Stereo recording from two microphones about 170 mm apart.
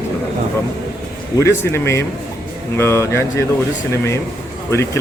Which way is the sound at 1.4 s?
15° left (ahead or behind).